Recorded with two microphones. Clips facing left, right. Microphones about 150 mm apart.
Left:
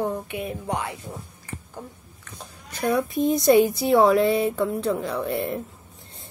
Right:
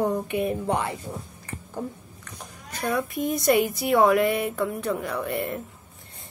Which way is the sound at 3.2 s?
30° left (ahead or behind).